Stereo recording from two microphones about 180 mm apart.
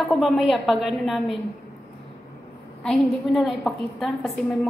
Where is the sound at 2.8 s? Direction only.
Centre (ahead or behind).